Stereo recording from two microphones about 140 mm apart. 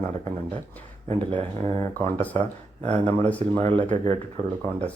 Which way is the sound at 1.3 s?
50° right (ahead or behind).